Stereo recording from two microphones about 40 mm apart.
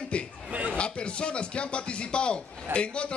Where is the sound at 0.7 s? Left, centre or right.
Left.